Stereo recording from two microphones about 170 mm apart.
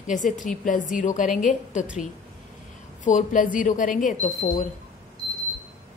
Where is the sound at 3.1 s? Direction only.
50° left (ahead or behind).